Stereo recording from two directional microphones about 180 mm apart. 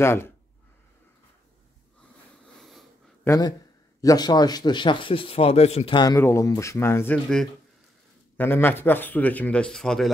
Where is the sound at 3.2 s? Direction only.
20° left (ahead or behind).